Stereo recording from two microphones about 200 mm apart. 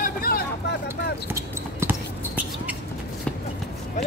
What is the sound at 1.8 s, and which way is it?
Basketball bounce, 10° right (ahead or behind).